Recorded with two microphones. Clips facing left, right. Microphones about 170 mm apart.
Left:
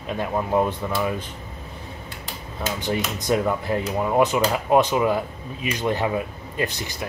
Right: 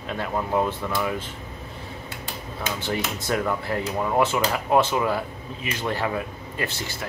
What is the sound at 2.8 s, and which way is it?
Speech, 15° left (ahead or behind).